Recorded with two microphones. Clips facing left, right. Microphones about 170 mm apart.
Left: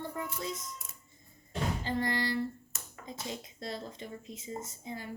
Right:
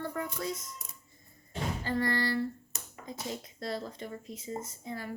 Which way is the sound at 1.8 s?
20° left (ahead or behind).